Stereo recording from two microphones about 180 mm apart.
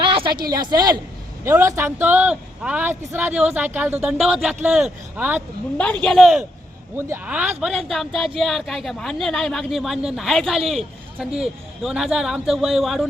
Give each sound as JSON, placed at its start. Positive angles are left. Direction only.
{"t": 0.0, "sound": "a sound", "side_deg": -30}
{"t": 0.5, "sound": "a woman's voice", "side_deg": -25}
{"t": 5.7, "sound": "a man's voice", "side_deg": 5}
{"t": 6.9, "sound": "a man's voice", "side_deg": -10}